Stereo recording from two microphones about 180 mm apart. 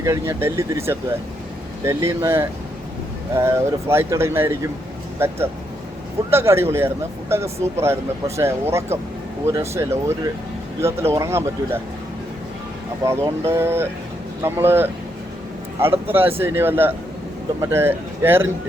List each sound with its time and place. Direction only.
0.0 s speech: 15° right (ahead or behind)
13.1 s speech: 15° right (ahead or behind)